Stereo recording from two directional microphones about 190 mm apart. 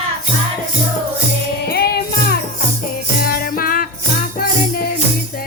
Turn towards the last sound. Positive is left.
turn(degrees=50)  # may be behind; listen again after turning